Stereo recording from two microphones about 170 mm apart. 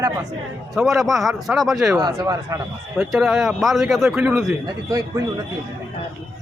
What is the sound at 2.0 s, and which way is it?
Speech, 20° right (ahead or behind).